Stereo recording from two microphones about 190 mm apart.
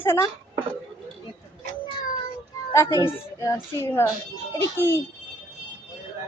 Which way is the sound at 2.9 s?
20° left (ahead or behind).